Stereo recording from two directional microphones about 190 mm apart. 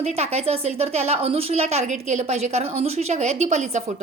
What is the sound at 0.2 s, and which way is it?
Speech, 30° right (ahead or behind).